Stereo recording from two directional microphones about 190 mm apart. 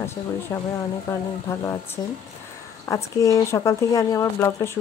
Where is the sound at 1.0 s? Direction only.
15° left (ahead or behind).